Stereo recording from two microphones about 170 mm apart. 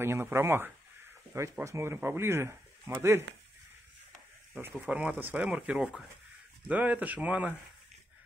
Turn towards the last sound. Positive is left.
turn(degrees=-10)  # may be behind; listen again after turning